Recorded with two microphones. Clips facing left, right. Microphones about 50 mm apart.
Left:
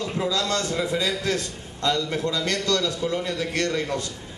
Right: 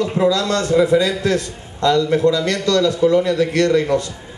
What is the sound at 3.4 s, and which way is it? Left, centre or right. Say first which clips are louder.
Speech: right 10 dB; right.